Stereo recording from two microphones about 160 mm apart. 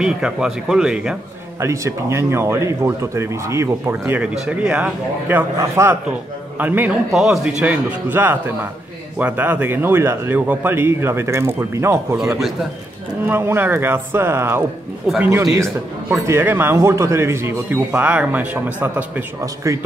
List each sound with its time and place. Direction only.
0.0 s speech: 5° right (ahead or behind)
1.6 s speech: 15° right (ahead or behind)
13.3 s speech: 15° right (ahead or behind)
15.4 s speech: 5° right (ahead or behind)
16.3 s speech: 15° right (ahead or behind)